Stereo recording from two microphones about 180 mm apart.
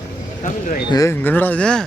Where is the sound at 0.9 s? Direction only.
15° left (ahead or behind).